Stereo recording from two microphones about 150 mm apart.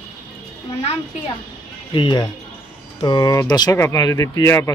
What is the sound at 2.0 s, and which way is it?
Speech, 35° left (ahead or behind).